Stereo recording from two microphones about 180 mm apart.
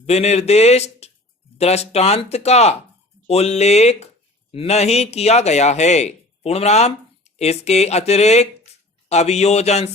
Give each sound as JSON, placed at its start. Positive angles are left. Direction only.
{"t": 0.0, "sound": "a man's voice", "side_deg": 35}
{"t": 8.7, "sound": "a sound", "side_deg": 35}
{"t": 9.0, "sound": "a man's voice", "side_deg": 35}